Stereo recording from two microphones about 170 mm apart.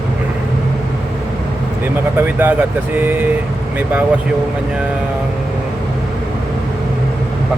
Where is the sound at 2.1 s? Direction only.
10° right (ahead or behind).